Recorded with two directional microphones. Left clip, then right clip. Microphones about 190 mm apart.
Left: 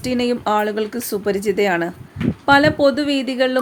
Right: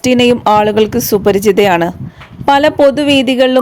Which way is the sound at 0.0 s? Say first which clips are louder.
Right 11 dB; 40° right (ahead or behind).